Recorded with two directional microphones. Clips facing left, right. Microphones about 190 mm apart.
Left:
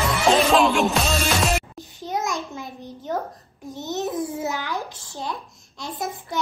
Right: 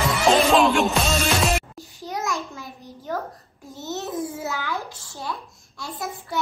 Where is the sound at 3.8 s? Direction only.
15° left (ahead or behind).